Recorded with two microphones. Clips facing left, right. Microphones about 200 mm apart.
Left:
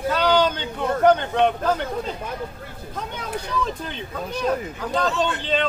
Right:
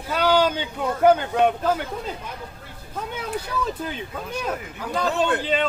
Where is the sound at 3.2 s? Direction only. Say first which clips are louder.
Left 1 dB; 5° right (ahead or behind).